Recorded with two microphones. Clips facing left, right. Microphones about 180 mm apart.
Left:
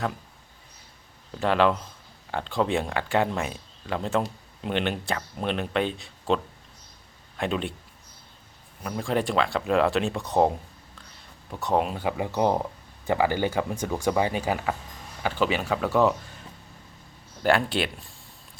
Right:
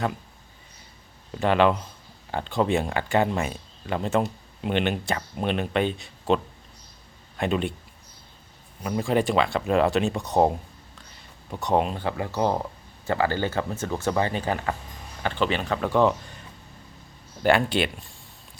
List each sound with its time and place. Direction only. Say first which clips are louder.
1.3 s speech: right 2 dB; centre (ahead or behind)
8.8 s speech: right 3 dB; 5° right (ahead or behind)
11.5 s speech: right 1 dB; centre (ahead or behind)
17.4 s speech: right 2 dB; centre (ahead or behind)